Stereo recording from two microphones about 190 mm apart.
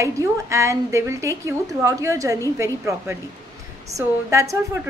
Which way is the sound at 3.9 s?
15° right (ahead or behind).